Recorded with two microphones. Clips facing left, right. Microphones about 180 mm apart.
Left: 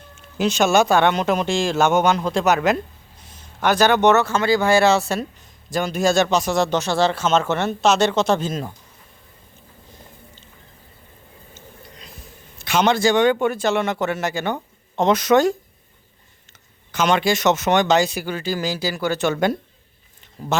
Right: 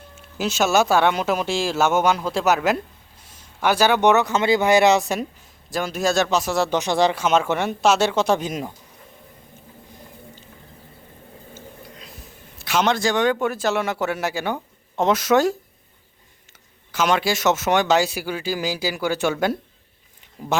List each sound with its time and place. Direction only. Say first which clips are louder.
0.3 s a man's voice: left 2 dB; 5° right (ahead or behind)
5.7 s speech: left 3 dB; centre (ahead or behind)
11.5 s a sound: right 2 dB; 5° right (ahead or behind)
12.5 s a man's voice: left 2 dB; centre (ahead or behind)